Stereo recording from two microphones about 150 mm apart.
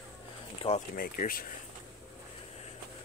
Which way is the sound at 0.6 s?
40° left (ahead or behind).